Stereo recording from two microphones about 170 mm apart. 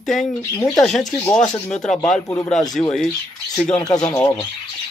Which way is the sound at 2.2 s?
15° left (ahead or behind).